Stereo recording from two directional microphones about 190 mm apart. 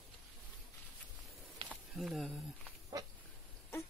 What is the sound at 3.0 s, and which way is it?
Dog, 20° right (ahead or behind).